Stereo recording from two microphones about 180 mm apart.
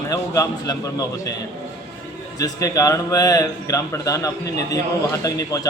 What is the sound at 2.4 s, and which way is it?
A man's voice, 20° left (ahead or behind).